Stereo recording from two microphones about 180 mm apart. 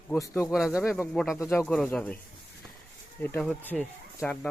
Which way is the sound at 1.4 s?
10° left (ahead or behind).